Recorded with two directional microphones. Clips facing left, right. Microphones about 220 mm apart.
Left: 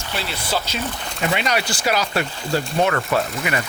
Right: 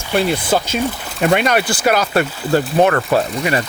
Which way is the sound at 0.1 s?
50° right (ahead or behind).